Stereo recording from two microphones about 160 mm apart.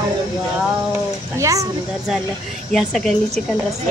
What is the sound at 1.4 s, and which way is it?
Speech, 20° right (ahead or behind).